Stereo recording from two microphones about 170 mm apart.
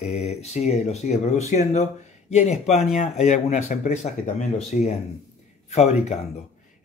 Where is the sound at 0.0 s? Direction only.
40° left (ahead or behind).